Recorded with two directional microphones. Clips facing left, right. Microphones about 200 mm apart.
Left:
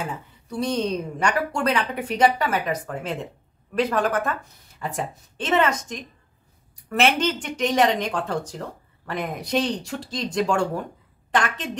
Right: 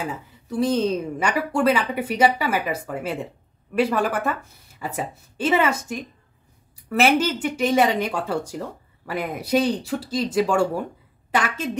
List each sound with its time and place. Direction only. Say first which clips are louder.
0.6 s a woman's voice: right 3 dB; 5° right (ahead or behind)